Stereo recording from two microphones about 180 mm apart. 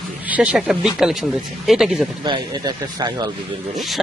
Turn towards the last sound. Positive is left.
turn(degrees=0)  # may be behind; listen again after turning